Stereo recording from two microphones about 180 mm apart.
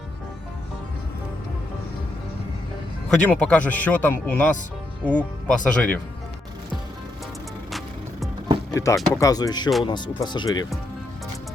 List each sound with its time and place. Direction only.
3.1 s speech: 5° left (ahead or behind)
8.7 s speech: 15° left (ahead or behind)